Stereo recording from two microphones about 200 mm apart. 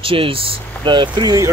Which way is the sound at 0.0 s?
25° right (ahead or behind).